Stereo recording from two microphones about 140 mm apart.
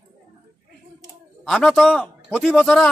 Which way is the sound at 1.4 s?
Centre (ahead or behind).